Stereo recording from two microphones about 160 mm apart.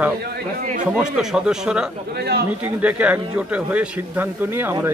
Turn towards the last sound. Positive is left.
turn(degrees=-15)  # may be behind; listen again after turning